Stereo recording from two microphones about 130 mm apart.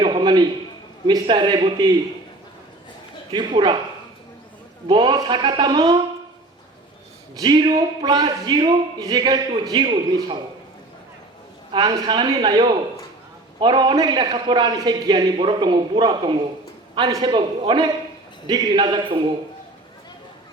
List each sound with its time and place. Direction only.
0.0 s a sound: 35° right (ahead or behind)
1.0 s a man's voice: 35° right (ahead or behind)
3.3 s a man's voice: 35° right (ahead or behind)
4.9 s a man's voice: 35° right (ahead or behind)
7.3 s a man's voice: 35° right (ahead or behind)
11.7 s a man's voice: 35° right (ahead or behind)